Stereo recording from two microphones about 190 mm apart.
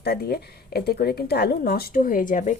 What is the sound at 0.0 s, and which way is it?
A woman's voice, 55° left (ahead or behind).